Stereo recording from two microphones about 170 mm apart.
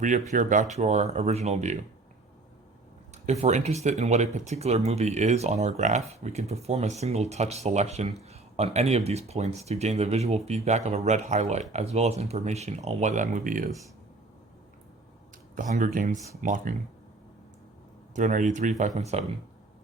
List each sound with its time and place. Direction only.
0.3 s speech: 45° right (ahead or behind)
3.2 s speech: 40° right (ahead or behind)
15.5 s speech: 50° right (ahead or behind)
18.1 s speech: 45° right (ahead or behind)